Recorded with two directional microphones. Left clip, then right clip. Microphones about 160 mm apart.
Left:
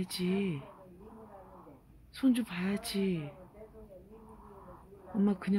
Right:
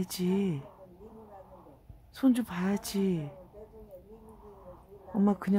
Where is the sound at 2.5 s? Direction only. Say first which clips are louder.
Right 3 dB; 25° right (ahead or behind).